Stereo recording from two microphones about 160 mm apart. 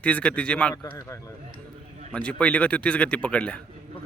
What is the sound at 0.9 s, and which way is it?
Speech, 20° left (ahead or behind).